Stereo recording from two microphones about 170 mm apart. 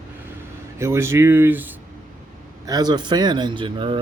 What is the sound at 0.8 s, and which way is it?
Speech, 15° right (ahead or behind).